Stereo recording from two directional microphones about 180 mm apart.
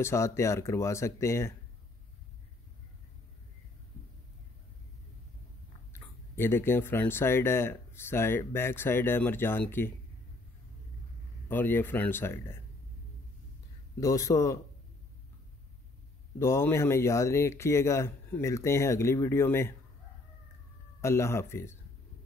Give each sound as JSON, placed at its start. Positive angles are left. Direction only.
{"t": 0.0, "sound": "speech", "side_deg": 15}
{"t": 5.9, "sound": "speech", "side_deg": 15}
{"t": 11.4, "sound": "speech", "side_deg": 10}
{"t": 13.9, "sound": "speech", "side_deg": 15}
{"t": 16.3, "sound": "speech", "side_deg": 15}
{"t": 21.0, "sound": "speech", "side_deg": 15}